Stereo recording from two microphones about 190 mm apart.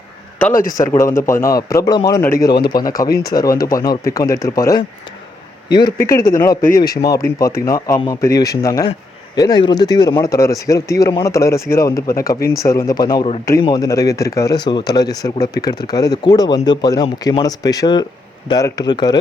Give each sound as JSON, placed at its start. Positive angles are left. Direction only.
{"t": 0.9, "sound": "speech", "side_deg": 15}
{"t": 6.1, "sound": "a man's voice", "side_deg": 50}
{"t": 7.3, "sound": "speech", "side_deg": 15}